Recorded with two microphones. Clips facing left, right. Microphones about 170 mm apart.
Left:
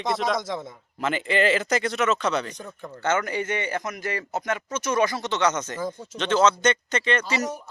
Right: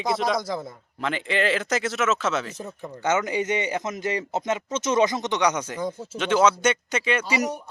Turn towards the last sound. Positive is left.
turn(degrees=-10)  # may be behind; listen again after turning